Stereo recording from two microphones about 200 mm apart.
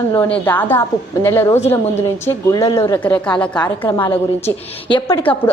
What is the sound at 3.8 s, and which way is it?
A woman's voice, 20° left (ahead or behind).